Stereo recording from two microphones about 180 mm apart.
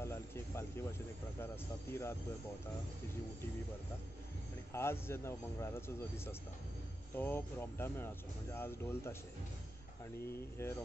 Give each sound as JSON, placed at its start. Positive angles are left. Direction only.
{"t": 0.0, "sound": "a sound", "side_deg": 15}
{"t": 1.4, "sound": "speech", "side_deg": 15}
{"t": 4.7, "sound": "speech", "side_deg": 15}
{"t": 10.6, "sound": "speech", "side_deg": 15}